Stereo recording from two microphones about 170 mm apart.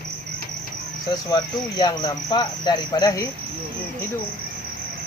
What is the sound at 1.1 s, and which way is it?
Cricket, 25° left (ahead or behind).